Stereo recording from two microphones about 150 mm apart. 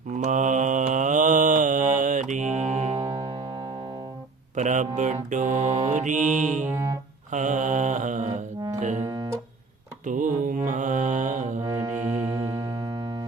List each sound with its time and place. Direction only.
0.2 s mantra: 55° right (ahead or behind)
4.5 s mantra: 55° right (ahead or behind)
6.7 s music: 15° right (ahead or behind)
7.3 s mantra: 55° right (ahead or behind)
8.8 s music: 55° right (ahead or behind)
9.0 s music: 25° right (ahead or behind)
10.1 s mantra: 60° right (ahead or behind)
11.6 s music: 20° right (ahead or behind)